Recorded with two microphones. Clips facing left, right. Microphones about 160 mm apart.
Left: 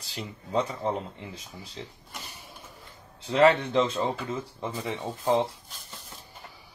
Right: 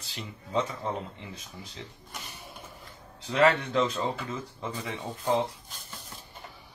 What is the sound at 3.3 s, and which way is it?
Speech, 30° left (ahead or behind).